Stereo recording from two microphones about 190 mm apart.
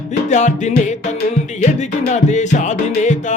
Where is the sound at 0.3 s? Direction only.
40° left (ahead or behind).